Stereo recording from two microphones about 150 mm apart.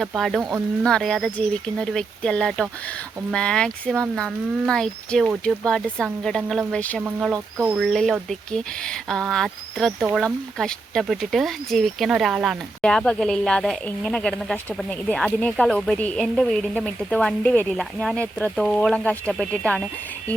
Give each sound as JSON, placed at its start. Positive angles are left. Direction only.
{"t": 0.0, "sound": "speech", "side_deg": 0}
{"t": 7.3, "sound": "speech", "side_deg": -15}
{"t": 7.8, "sound": "speech", "side_deg": 5}